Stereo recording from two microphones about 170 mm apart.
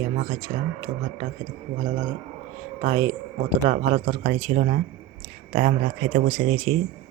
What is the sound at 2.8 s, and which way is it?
Speech, 35° right (ahead or behind).